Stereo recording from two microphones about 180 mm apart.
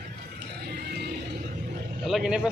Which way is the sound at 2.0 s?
5° right (ahead or behind).